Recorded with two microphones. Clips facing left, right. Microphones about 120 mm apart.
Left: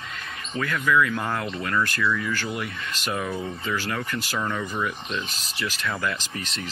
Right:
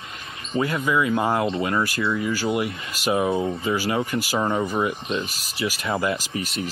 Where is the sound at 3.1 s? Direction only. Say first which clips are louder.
Right 8 dB; 50° right (ahead or behind).